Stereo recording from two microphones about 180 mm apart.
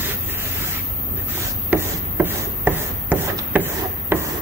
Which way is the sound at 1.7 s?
10° right (ahead or behind).